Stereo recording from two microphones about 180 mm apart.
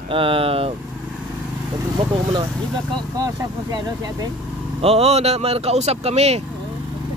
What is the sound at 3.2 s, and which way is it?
Speech, 20° right (ahead or behind).